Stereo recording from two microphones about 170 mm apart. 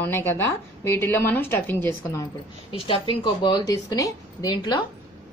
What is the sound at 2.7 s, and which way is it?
A woman's voice, 30° left (ahead or behind).